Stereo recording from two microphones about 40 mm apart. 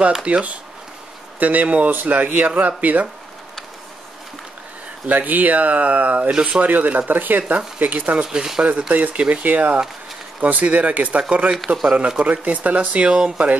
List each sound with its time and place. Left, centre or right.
0.2 s speech: right
1.4 s speech: right
5.0 s speech: right
7.1 s speech: right
8.2 s speech: centre
8.6 s speech: right
11.5 s speech: centre
12.2 s speech: right
13.1 s speech: right